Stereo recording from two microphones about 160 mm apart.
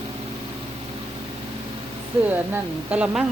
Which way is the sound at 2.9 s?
5° right (ahead or behind).